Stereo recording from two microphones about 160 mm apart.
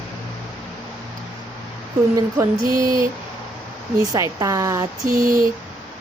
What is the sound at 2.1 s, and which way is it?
Speech, 20° right (ahead or behind).